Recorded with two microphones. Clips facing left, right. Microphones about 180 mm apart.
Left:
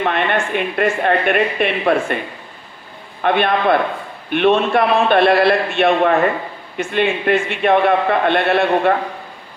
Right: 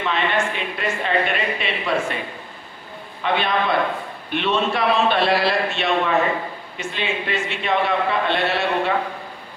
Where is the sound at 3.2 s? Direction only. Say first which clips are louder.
Left 5 dB; 55° left (ahead or behind).